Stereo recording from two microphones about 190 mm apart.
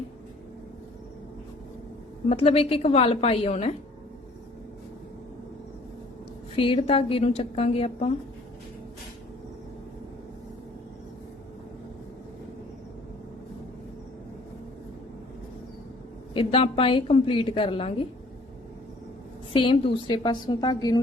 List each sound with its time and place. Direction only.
2.3 s a woman's voice: 30° left (ahead or behind)
6.6 s a woman's voice: 30° left (ahead or behind)
16.3 s a woman's voice: 30° left (ahead or behind)
19.5 s a woman's voice: 25° left (ahead or behind)